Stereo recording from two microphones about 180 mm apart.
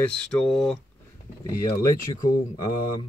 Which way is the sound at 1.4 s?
20° left (ahead or behind).